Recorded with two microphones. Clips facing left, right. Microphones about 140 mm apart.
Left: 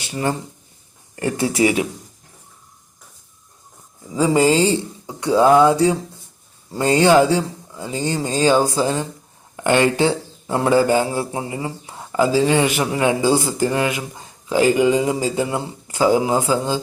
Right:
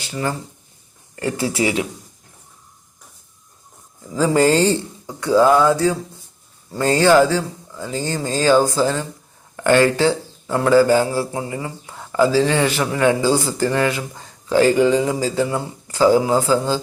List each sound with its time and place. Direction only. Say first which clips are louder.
0.0 s a man's voice: left 2 dB; 25° left (ahead or behind)
4.1 s a man's voice: even; 10° left (ahead or behind)